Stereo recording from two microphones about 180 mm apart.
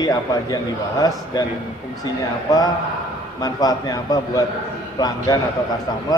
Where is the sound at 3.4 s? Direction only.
20° left (ahead or behind).